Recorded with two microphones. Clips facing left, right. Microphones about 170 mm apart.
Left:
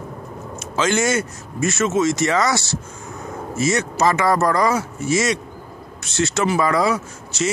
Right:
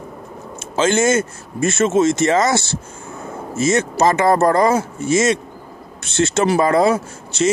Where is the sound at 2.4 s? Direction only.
50° right (ahead or behind).